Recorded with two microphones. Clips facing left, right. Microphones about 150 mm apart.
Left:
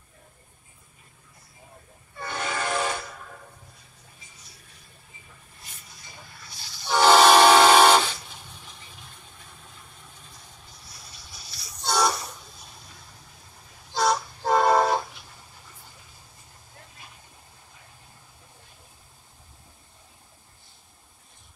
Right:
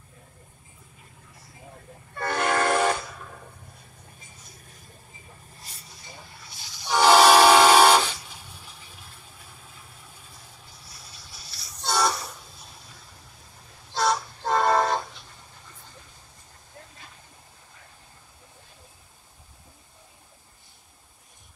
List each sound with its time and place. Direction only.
2.1 s train: 65° right (ahead or behind)
4.2 s vehicle: 50° right (ahead or behind)
5.6 s vehicle: 35° right (ahead or behind)
6.5 s train: 15° right (ahead or behind); by 12.1 s centre (ahead or behind)
13.9 s train: centre (ahead or behind)